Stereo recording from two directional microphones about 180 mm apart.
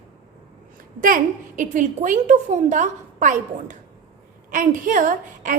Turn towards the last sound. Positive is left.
turn(degrees=-45)  # may be behind; listen again after turning